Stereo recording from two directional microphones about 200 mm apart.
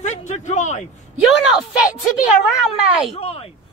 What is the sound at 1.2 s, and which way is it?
A woman's voice, 5° right (ahead or behind).